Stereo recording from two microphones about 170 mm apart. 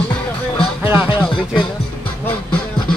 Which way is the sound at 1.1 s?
30° left (ahead or behind).